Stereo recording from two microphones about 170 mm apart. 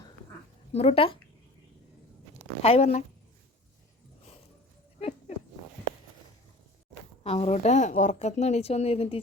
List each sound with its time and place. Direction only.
0.7 s speech: 35° left (ahead or behind)
2.6 s speech: 35° left (ahead or behind)
7.3 s speech: 35° left (ahead or behind)